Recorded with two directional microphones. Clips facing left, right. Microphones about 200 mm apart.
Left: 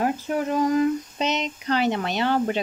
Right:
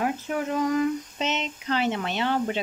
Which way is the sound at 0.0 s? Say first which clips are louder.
Left 3 dB; 40° left (ahead or behind).